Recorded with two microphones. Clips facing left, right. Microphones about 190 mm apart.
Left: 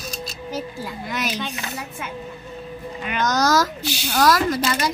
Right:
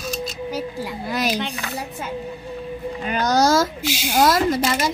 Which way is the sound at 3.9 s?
10° right (ahead or behind).